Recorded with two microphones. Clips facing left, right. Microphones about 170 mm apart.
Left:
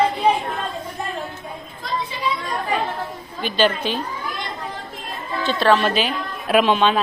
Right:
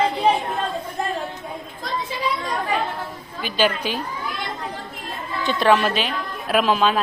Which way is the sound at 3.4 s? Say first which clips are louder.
Left 2 dB; 10° right (ahead or behind).